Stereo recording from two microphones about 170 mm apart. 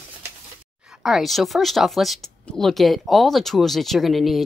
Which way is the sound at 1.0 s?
Centre (ahead or behind).